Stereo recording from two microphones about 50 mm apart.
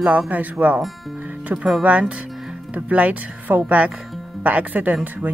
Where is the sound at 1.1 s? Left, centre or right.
Right.